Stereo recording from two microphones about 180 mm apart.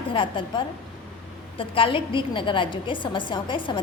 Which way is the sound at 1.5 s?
30° left (ahead or behind).